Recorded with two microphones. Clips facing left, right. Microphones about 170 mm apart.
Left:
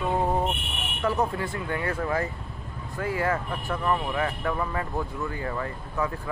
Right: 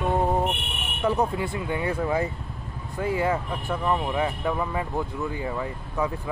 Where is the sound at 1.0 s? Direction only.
15° right (ahead or behind).